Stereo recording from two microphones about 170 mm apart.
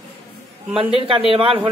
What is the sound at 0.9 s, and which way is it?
Speech, 30° right (ahead or behind).